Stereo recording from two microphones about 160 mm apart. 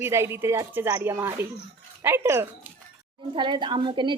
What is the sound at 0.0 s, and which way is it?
Speech, 15° right (ahead or behind).